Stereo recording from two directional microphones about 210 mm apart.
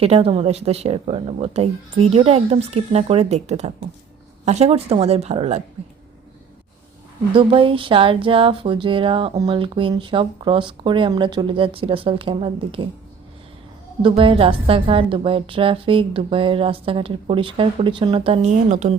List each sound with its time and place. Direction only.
0.0 s speech: 30° right (ahead or behind)
7.3 s speech: 25° right (ahead or behind)
14.0 s speech: 25° right (ahead or behind)